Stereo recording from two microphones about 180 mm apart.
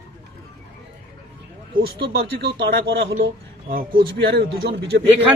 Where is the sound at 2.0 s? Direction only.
65° right (ahead or behind).